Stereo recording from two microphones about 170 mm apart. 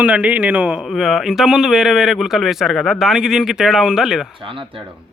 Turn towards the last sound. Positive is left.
turn(degrees=-30)  # may be behind; listen again after turning